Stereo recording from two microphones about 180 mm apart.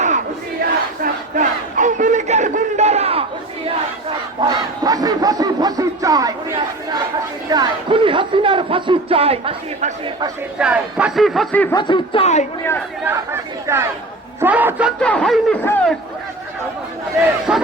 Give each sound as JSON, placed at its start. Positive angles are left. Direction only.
{"t": 1.0, "sound": "battle cry", "side_deg": -45}
{"t": 4.4, "sound": "a sound", "side_deg": -20}
{"t": 7.5, "sound": "speech", "side_deg": -25}
{"t": 10.6, "sound": "speech", "side_deg": -5}
{"t": 11.7, "sound": "a woman's voice", "side_deg": 25}
{"t": 13.1, "sound": "speech", "side_deg": -15}
{"t": 15.0, "sound": "speech", "side_deg": 5}
{"t": 17.5, "sound": "speech", "side_deg": -5}